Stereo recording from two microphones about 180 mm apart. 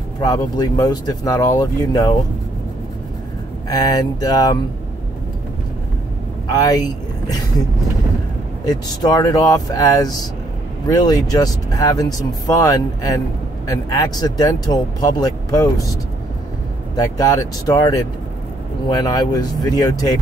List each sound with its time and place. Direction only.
0.2 s speech: 20° left (ahead or behind)
3.6 s speech: 20° left (ahead or behind)
6.4 s speech: 20° left (ahead or behind)
8.6 s speech: 20° left (ahead or behind)
16.9 s speech: 20° left (ahead or behind)